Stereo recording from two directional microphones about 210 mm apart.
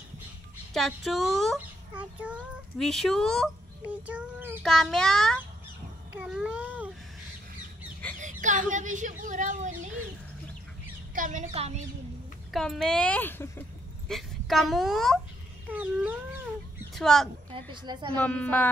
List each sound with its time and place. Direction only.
0.7 s a child's voice: centre (ahead or behind)
8.2 s speech: 35° right (ahead or behind)
11.1 s speech: 35° right (ahead or behind)
12.4 s a child's voice: centre (ahead or behind)
17.6 s a woman's voice: 20° right (ahead or behind)
18.1 s a woman's voice: 5° left (ahead or behind)